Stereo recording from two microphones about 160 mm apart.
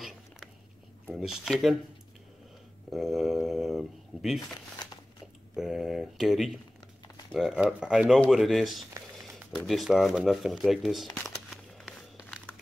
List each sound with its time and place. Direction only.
1.1 s speech: centre (ahead or behind)
2.9 s speech: centre (ahead or behind)
5.6 s speech: centre (ahead or behind)
11.2 s crumpling: centre (ahead or behind)